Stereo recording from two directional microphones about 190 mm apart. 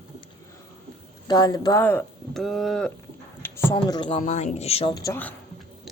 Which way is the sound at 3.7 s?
25° left (ahead or behind).